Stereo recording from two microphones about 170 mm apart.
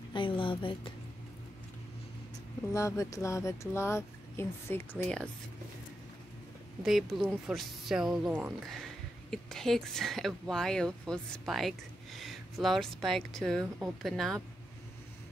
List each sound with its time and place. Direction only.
0.1 s music: 30° left (ahead or behind)
2.7 s speech: 20° left (ahead or behind)
6.8 s speech: centre (ahead or behind)